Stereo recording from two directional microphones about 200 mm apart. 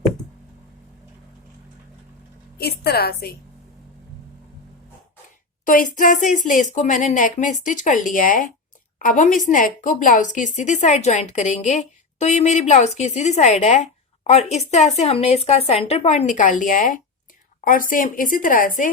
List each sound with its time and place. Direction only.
2.6 s a woman's voice: 50° left (ahead or behind)
5.6 s a woman's voice: 45° left (ahead or behind)